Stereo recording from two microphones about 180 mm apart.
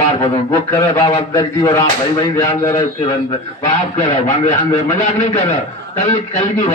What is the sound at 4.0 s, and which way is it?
Speech, 40° left (ahead or behind).